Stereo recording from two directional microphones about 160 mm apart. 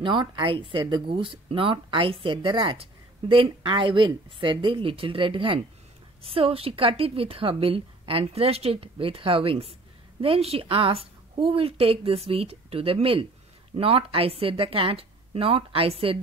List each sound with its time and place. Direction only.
0.0 s speech: 30° right (ahead or behind)